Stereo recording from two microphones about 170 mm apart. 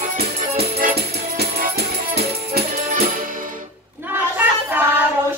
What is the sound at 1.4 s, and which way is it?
Music, 65° right (ahead or behind).